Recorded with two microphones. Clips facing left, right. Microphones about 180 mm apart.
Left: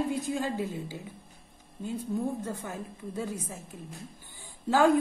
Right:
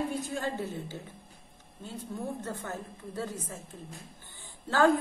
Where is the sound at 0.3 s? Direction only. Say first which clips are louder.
Left 3 dB; 15° left (ahead or behind).